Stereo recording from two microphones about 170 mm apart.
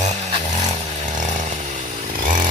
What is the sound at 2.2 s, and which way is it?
Chainsaw, 50° right (ahead or behind).